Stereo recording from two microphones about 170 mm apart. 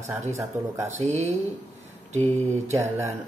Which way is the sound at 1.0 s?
40° right (ahead or behind).